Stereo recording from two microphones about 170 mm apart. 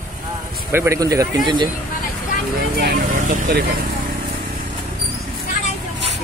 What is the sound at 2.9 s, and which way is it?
Speech, 50° right (ahead or behind).